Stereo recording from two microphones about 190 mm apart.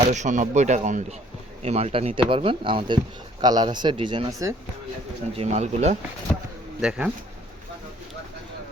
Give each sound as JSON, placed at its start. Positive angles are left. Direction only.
{"t": 0.0, "sound": "speech", "side_deg": -40}
{"t": 5.4, "sound": "speech", "side_deg": -35}
{"t": 6.8, "sound": "speech", "side_deg": -5}